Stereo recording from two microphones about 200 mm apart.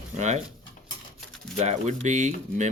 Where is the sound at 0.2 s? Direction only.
35° right (ahead or behind).